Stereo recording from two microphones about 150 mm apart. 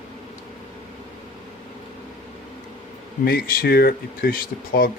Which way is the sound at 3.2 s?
75° left (ahead or behind).